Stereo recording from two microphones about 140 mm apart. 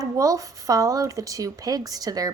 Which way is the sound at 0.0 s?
25° right (ahead or behind).